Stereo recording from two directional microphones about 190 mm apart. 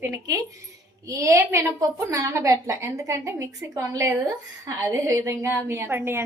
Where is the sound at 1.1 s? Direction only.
15° right (ahead or behind).